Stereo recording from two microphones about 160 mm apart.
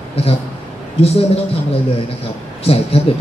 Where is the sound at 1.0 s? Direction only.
40° left (ahead or behind).